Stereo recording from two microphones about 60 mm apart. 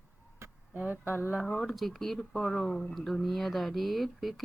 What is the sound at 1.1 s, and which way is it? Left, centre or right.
Speech, left.